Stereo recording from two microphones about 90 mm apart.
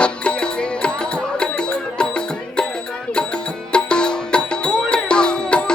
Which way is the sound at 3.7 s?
10° left (ahead or behind).